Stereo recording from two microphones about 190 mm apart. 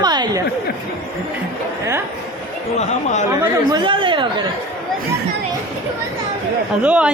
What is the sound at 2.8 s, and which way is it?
Speech, 40° left (ahead or behind).